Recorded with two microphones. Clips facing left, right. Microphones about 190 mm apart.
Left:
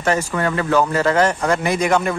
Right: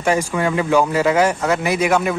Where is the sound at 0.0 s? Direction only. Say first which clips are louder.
Right 1 dB; 10° right (ahead or behind).